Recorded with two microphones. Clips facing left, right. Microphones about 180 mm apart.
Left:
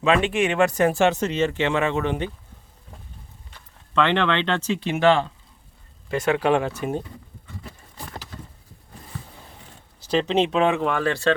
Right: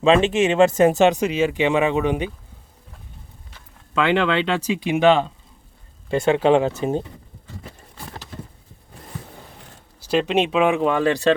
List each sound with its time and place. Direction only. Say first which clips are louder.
0.0 s speech: right 4 dB; 25° right (ahead or behind)
3.9 s speech: right 2 dB; 10° right (ahead or behind)
6.1 s speech: right 4 dB; 25° right (ahead or behind)
10.1 s speech: right 1 dB; 10° right (ahead or behind)